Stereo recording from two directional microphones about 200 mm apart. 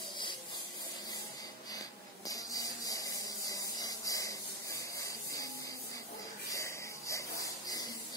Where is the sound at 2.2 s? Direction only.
15° left (ahead or behind).